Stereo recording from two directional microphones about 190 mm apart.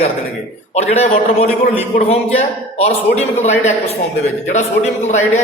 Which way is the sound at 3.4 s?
35° left (ahead or behind).